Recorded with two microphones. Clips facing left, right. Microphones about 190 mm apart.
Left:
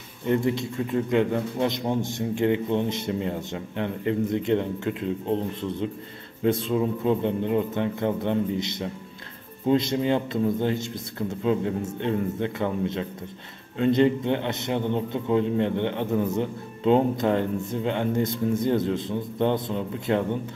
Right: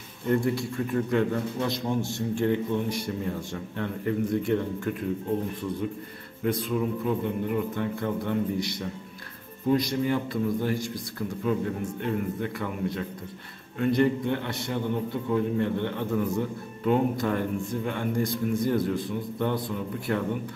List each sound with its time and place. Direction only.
0.3 s a man's voice: 20° left (ahead or behind)
6.4 s a man's voice: 25° left (ahead or behind)